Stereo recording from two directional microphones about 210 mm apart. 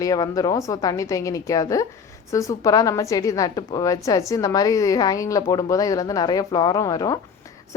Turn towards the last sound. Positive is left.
turn(degrees=15)  # may be behind; listen again after turning